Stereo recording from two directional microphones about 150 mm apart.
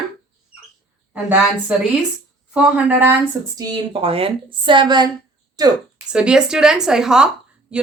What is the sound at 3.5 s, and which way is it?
A woman's voice, 30° right (ahead or behind).